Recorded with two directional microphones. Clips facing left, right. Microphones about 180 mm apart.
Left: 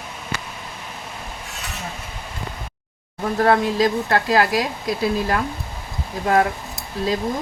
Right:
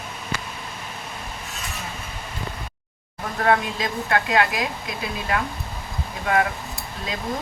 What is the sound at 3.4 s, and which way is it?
Speech, 35° left (ahead or behind).